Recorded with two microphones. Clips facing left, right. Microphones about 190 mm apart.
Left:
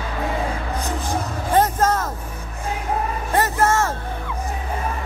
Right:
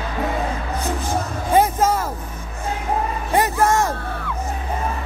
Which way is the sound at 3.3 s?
15° right (ahead or behind).